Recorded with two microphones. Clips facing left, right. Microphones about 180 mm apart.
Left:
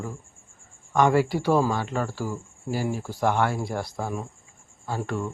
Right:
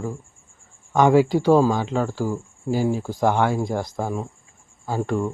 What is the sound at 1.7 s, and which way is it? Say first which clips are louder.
Speech: right 4 dB; centre (ahead or behind).